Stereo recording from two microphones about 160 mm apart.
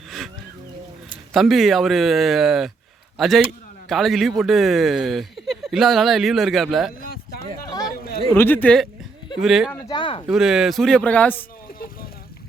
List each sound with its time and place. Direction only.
1.3 s speech: centre (ahead or behind)
8.3 s speech: 15° left (ahead or behind)
9.9 s speech: 30° left (ahead or behind)
10.2 s speech: 5° right (ahead or behind)